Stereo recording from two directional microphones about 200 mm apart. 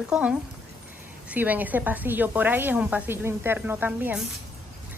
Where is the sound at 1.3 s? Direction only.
10° right (ahead or behind).